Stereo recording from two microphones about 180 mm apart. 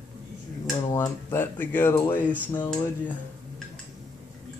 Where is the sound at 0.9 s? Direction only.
15° left (ahead or behind).